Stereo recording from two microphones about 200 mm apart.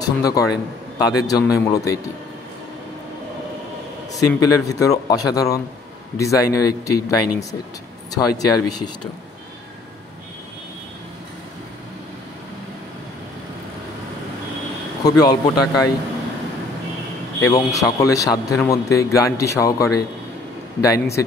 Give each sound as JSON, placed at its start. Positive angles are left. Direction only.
{"t": 0.0, "sound": "a man's voice", "side_deg": 20}
{"t": 4.1, "sound": "a man's voice", "side_deg": 20}
{"t": 15.0, "sound": "speech", "side_deg": 20}
{"t": 17.4, "sound": "a man's voice", "side_deg": 15}